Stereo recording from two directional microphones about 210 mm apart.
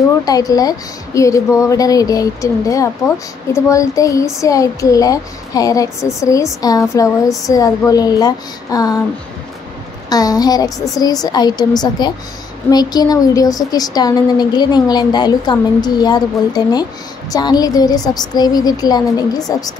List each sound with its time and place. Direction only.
0.2 s speech: 15° left (ahead or behind)
10.0 s a woman's voice: 15° left (ahead or behind)